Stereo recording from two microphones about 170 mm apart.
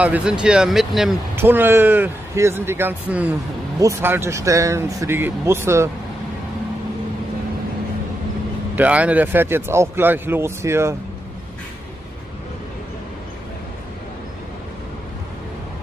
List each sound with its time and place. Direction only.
0.0 s speech: 5° right (ahead or behind)
1.3 s speech: 10° right (ahead or behind)
8.7 s speech: 10° right (ahead or behind)